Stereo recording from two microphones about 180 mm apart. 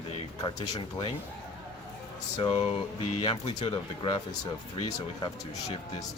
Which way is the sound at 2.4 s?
30° left (ahead or behind).